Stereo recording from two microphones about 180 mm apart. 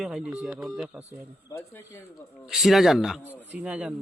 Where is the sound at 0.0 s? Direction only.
Centre (ahead or behind).